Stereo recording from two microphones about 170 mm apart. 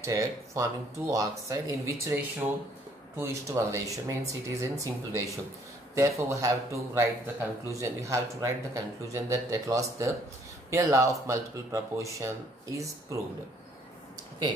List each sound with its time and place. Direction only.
0.0 s speech: 20° right (ahead or behind)